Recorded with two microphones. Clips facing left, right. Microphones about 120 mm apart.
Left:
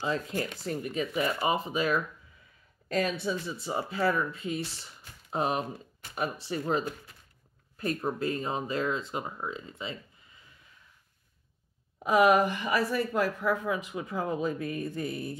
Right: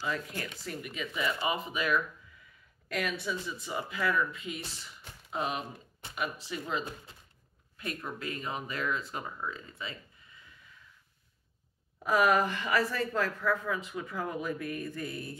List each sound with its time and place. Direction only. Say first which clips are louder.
0.0 s speech: left 5 dB; 30° left (ahead or behind)
6.8 s speech: left 5 dB; 25° right (ahead or behind)
7.7 s speech: left 8 dB; 40° left (ahead or behind)
12.0 s speech: left 4 dB; 20° left (ahead or behind)